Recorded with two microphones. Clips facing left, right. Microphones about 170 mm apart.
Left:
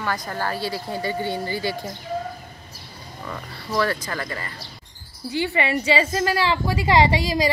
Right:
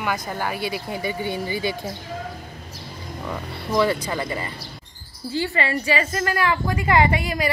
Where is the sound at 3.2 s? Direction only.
20° right (ahead or behind).